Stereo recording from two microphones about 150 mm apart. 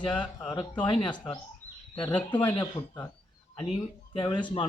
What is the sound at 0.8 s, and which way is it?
Speech, 35° left (ahead or behind).